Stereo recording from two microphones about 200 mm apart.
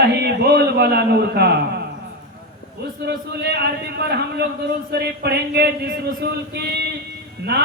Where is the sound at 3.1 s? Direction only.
55° right (ahead or behind).